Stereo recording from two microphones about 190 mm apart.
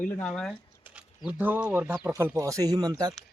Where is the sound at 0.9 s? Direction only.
5° right (ahead or behind).